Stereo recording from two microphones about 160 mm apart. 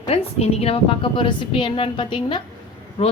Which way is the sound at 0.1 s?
40° left (ahead or behind).